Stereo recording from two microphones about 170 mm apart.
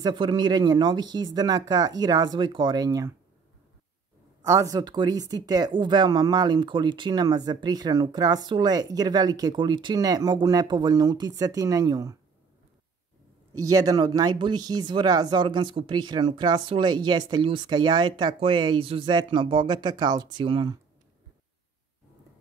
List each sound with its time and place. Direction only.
0.0 s speech: 25° right (ahead or behind)
4.5 s speech: 20° right (ahead or behind)
13.5 s speech: 20° right (ahead or behind)